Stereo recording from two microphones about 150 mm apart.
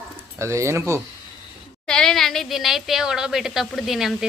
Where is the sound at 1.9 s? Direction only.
5° left (ahead or behind).